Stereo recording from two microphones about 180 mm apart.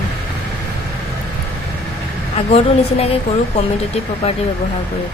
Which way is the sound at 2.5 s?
35° left (ahead or behind).